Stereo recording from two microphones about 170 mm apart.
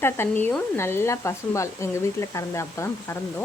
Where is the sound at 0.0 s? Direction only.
10° left (ahead or behind).